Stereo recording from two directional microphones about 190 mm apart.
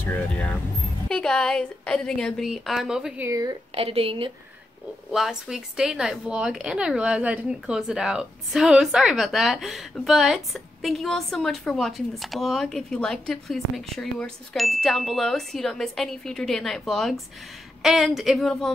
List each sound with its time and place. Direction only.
0.0 s speech: 10° left (ahead or behind)
3.3 s speech: 20° right (ahead or behind)
3.7 s a woman's voice: 30° right (ahead or behind)
5.1 s speech: centre (ahead or behind)